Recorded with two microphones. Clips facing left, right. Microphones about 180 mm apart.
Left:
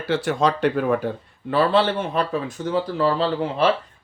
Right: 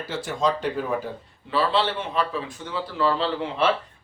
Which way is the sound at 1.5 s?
50° left (ahead or behind).